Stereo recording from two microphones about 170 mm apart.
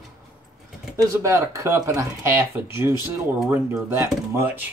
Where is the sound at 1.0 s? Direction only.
20° right (ahead or behind).